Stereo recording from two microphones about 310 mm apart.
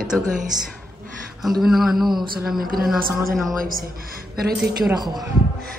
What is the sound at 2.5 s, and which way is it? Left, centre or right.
Speech, right.